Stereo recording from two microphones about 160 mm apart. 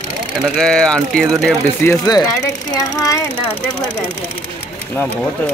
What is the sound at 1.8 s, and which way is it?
Speech, 25° left (ahead or behind).